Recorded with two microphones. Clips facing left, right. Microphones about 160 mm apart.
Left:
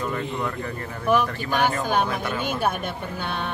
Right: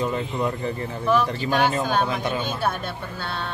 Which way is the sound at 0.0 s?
20° right (ahead or behind).